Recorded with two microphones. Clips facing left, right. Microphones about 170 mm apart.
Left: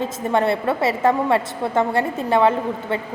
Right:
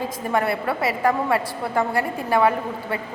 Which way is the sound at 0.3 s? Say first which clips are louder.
Left 4 dB; 25° left (ahead or behind).